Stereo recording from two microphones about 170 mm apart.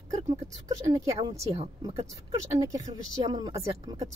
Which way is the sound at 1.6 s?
35° right (ahead or behind).